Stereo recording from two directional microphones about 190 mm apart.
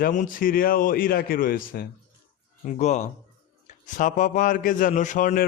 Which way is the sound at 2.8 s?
40° left (ahead or behind).